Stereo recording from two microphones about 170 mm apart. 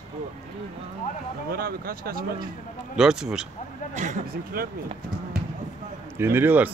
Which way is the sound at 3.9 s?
45° right (ahead or behind).